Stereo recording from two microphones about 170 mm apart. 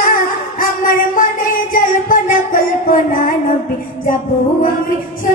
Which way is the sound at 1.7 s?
55° left (ahead or behind).